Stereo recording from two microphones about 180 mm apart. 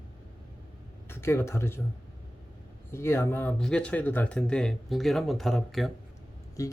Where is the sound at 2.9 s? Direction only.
15° left (ahead or behind).